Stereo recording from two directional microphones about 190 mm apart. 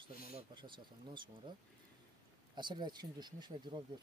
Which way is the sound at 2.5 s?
25° right (ahead or behind).